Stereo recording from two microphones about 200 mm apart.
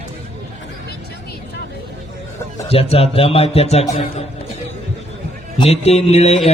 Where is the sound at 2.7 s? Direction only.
30° left (ahead or behind).